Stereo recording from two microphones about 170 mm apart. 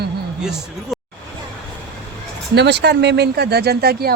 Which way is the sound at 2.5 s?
85° right.